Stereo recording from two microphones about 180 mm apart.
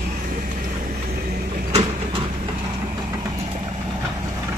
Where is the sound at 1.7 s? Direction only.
35° right (ahead or behind).